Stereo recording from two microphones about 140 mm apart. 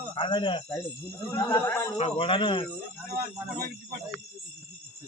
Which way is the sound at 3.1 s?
90° right.